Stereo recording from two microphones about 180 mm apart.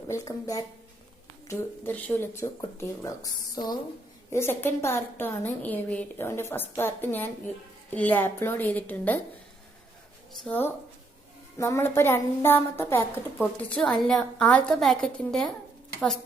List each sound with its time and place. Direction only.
0.1 s a woman's voice: 20° left (ahead or behind)
10.4 s a woman's voice: 10° left (ahead or behind)